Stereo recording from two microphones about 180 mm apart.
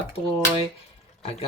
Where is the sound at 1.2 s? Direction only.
35° left (ahead or behind).